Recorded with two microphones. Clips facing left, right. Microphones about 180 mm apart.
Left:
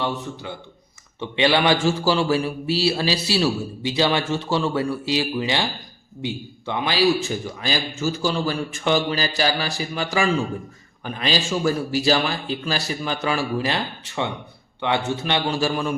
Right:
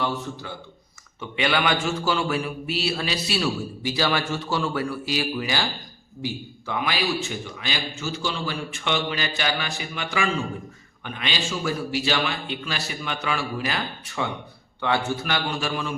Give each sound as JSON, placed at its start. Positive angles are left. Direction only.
{"t": 1.2, "sound": "a man's voice", "side_deg": 30}